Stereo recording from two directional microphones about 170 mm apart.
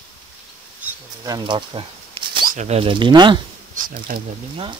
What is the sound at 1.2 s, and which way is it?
Speech, 25° right (ahead or behind).